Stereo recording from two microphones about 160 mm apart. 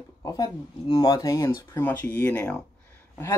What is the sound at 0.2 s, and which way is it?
Speech, 20° left (ahead or behind).